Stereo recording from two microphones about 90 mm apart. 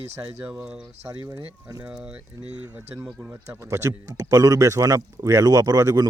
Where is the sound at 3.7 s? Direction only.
35° right (ahead or behind).